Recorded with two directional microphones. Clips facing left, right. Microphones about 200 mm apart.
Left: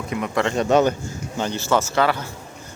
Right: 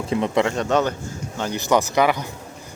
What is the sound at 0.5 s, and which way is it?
Speech, 10° left (ahead or behind).